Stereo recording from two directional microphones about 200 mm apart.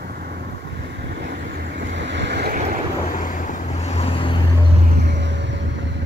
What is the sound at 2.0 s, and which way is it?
Boat, 60° right (ahead or behind).